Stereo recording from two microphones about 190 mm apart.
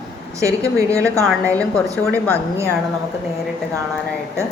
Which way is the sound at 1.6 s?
5° left (ahead or behind).